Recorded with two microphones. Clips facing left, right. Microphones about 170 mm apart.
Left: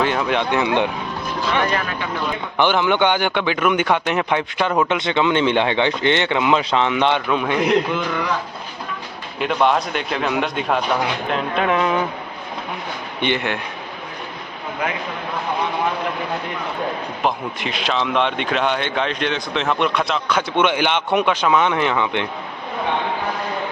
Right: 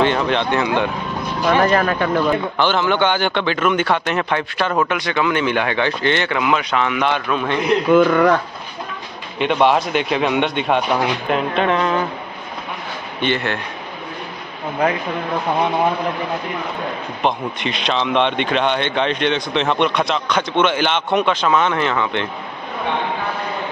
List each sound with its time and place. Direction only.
0.0 s a man's voice: 5° left (ahead or behind)
1.5 s speech: 40° right (ahead or behind)
2.5 s a man's voice: 15° left (ahead or behind)
7.9 s speech: 55° right (ahead or behind)
9.4 s speech: centre (ahead or behind)
13.2 s a man's voice: 15° left (ahead or behind)
14.8 s speech: 35° right (ahead or behind)
17.2 s speech: 5° left (ahead or behind)